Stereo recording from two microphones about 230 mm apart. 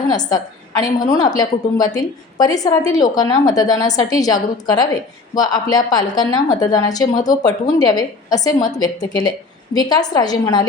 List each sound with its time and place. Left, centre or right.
0.1 s a woman's voice: centre